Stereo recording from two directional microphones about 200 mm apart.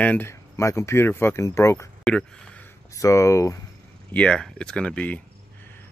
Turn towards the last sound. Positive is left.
turn(degrees=5)  # may be behind; listen again after turning